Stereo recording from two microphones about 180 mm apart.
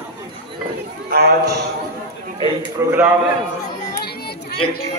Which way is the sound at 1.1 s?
65° right (ahead or behind).